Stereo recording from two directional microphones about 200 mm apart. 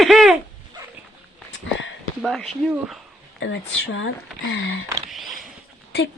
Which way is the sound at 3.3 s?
70° left (ahead or behind).